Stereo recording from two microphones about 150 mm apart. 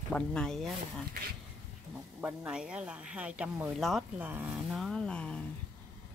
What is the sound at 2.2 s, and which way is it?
Speech, 15° right (ahead or behind).